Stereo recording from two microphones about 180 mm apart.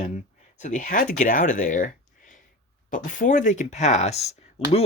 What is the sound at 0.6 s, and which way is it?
Speech, 45° left (ahead or behind).